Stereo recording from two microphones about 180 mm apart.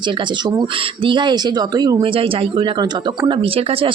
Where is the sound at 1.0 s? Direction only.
25° right (ahead or behind).